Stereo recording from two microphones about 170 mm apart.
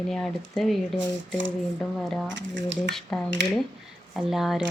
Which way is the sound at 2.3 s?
90° right.